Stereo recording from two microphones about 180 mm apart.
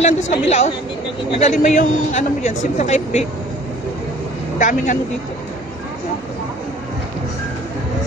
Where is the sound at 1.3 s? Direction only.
35° left (ahead or behind).